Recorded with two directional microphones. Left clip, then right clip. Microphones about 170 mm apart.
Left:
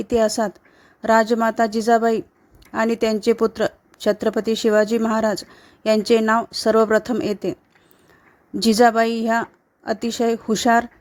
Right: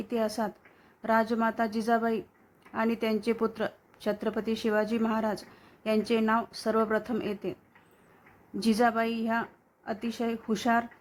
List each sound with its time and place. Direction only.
0.0 s speech: 45° left (ahead or behind)
8.5 s speech: 45° left (ahead or behind)